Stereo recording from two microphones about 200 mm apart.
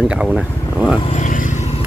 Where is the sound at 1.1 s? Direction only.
40° left (ahead or behind).